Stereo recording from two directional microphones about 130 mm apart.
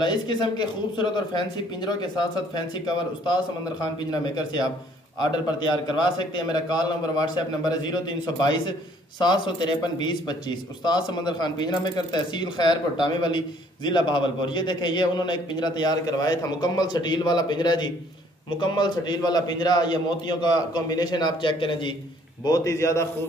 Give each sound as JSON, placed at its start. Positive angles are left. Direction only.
{"t": 0.0, "sound": "speech", "side_deg": 35}
{"t": 4.1, "sound": "speech", "side_deg": 35}
{"t": 5.9, "sound": "speech", "side_deg": 35}
{"t": 22.4, "sound": "a man's voice", "side_deg": 25}